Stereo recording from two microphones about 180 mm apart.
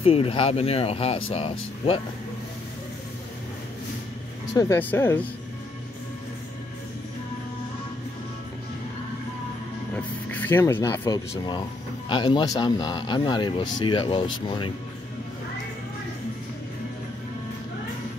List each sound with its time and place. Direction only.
0.0 s speech: 30° left (ahead or behind)
4.6 s speech: 15° left (ahead or behind)
9.9 s speech: 10° left (ahead or behind); by 14.3 s 30° left (ahead or behind)